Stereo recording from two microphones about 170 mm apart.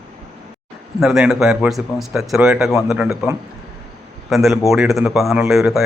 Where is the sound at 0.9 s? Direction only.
Centre (ahead or behind).